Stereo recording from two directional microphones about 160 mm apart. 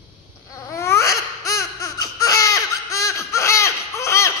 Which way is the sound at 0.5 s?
20° left (ahead or behind).